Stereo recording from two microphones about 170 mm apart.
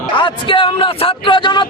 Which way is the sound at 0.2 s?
30° left (ahead or behind).